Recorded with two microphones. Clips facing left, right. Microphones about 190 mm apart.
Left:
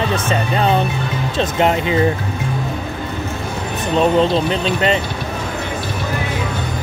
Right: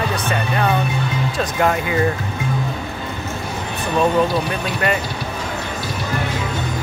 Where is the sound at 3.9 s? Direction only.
20° left (ahead or behind).